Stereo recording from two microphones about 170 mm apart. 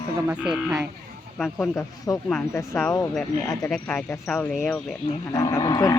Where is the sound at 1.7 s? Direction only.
20° left (ahead or behind).